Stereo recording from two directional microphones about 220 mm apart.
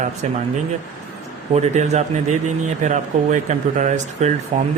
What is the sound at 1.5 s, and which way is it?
A man's voice, 30° right (ahead or behind).